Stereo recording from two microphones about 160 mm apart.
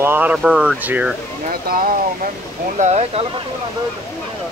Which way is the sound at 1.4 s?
60° right (ahead or behind).